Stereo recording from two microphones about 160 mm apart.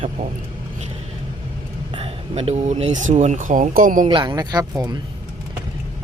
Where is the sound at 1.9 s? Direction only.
40° right (ahead or behind); by 4.1 s 60° right (ahead or behind).